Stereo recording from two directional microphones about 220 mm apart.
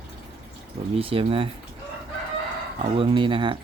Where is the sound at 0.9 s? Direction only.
25° right (ahead or behind).